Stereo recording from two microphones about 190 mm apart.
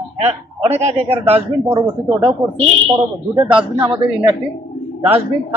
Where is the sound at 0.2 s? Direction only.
35° right (ahead or behind).